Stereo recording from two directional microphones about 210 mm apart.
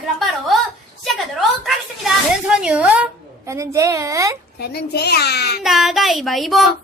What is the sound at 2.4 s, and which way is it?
A child's voice, 5° right (ahead or behind).